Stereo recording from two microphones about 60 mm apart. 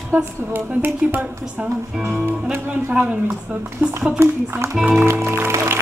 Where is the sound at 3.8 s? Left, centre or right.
Right.